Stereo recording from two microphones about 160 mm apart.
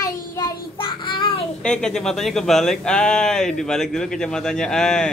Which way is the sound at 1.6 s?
5° left (ahead or behind).